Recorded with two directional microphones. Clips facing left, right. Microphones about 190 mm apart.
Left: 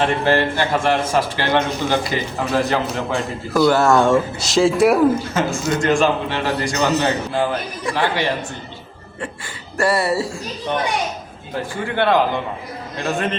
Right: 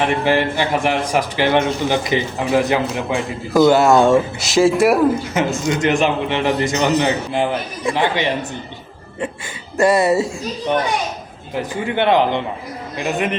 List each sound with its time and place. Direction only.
0.0 s a man's voice: 15° right (ahead or behind)
4.5 s speech: 5° right (ahead or behind)
5.3 s a man's voice: 15° right (ahead or behind)
9.7 s a man's voice: 20° right (ahead or behind)
11.5 s a man's voice: 20° right (ahead or behind)